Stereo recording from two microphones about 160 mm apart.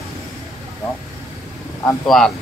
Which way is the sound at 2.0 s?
Centre (ahead or behind).